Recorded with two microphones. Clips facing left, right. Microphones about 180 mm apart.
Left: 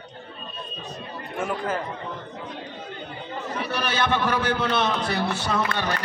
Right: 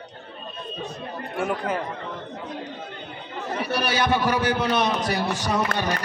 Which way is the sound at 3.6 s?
10° right (ahead or behind).